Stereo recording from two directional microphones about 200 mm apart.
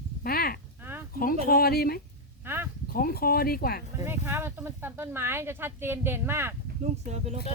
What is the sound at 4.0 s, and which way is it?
Speech, 10° right (ahead or behind).